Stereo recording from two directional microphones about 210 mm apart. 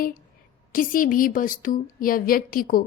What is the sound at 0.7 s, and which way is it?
A woman's voice, 40° left (ahead or behind).